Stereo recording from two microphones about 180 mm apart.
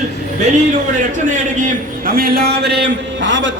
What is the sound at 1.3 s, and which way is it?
A man's voice, 45° right (ahead or behind).